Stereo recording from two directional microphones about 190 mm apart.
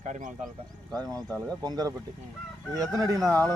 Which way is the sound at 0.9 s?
20° right (ahead or behind).